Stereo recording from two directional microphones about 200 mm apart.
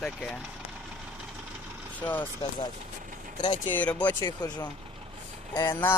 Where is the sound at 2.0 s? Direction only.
10° left (ahead or behind).